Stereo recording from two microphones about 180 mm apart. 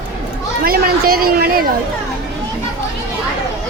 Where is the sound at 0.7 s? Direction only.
55° right (ahead or behind).